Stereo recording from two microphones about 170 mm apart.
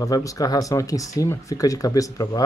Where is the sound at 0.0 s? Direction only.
20° left (ahead or behind).